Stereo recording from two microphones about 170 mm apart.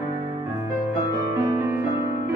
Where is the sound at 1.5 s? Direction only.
15° right (ahead or behind).